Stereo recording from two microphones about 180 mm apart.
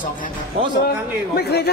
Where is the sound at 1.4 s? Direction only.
65° left (ahead or behind).